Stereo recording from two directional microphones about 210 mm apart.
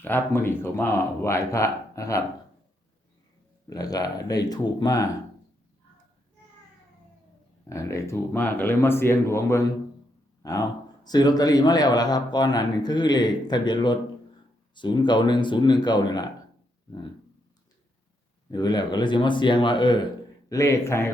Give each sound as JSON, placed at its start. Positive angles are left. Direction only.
{"t": 0.0, "sound": "speech", "side_deg": 10}
{"t": 3.7, "sound": "speech", "side_deg": 15}
{"t": 7.7, "sound": "a man's voice", "side_deg": 15}
{"t": 18.5, "sound": "a man's voice", "side_deg": 20}